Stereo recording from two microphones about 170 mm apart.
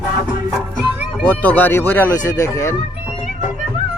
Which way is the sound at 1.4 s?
10° left (ahead or behind).